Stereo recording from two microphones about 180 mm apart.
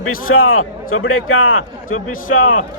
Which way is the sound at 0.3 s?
90° left.